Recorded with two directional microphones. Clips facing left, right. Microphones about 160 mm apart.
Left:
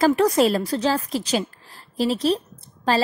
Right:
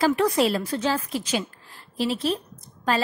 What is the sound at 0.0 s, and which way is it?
A woman's voice, 40° left (ahead or behind).